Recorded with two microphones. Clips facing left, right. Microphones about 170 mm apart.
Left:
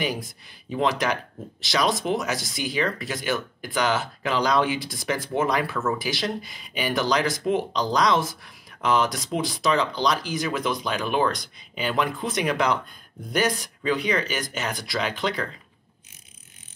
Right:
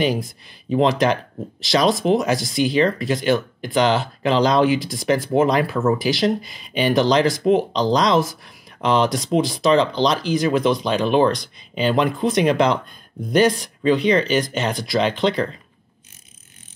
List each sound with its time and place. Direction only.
0.7 s speech: 20° right (ahead or behind)